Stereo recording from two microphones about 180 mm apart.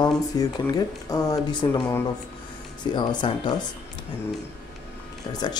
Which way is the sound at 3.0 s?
25° left (ahead or behind).